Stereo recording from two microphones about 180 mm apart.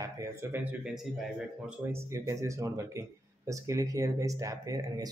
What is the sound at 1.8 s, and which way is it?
Speech, 15° right (ahead or behind).